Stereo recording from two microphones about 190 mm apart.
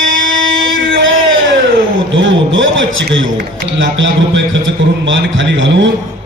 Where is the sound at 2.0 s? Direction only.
75° right (ahead or behind).